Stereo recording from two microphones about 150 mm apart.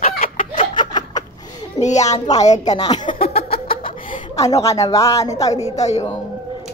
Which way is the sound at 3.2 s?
40° left (ahead or behind).